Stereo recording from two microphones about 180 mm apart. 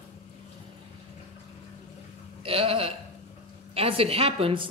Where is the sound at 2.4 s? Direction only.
30° right (ahead or behind).